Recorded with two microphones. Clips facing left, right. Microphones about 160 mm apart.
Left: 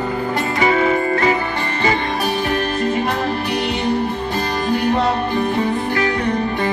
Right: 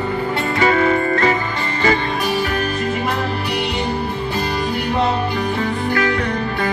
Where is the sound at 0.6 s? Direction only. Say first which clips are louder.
Right 1 dB; 10° left (ahead or behind).